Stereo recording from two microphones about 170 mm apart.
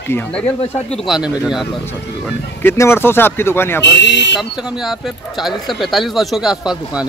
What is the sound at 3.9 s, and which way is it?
Speech, 90° left.